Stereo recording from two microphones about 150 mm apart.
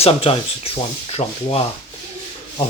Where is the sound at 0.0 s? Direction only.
40° left (ahead or behind).